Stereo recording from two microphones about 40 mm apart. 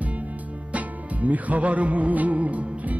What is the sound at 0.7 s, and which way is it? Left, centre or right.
Music, right.